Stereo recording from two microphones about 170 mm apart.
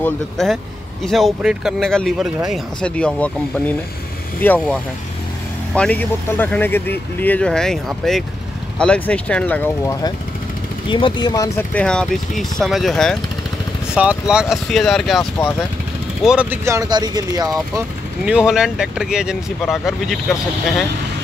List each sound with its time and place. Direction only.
0.0 s speech: centre (ahead or behind)
5.8 s speech: 10° left (ahead or behind)
10.9 s speech: 30° left (ahead or behind)
11.7 s speech: 5° left (ahead or behind); by 17.5 s 20° right (ahead or behind)
18.2 s speech: 5° right (ahead or behind)